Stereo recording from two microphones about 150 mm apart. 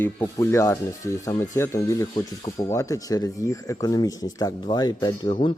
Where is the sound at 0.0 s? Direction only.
15° left (ahead or behind).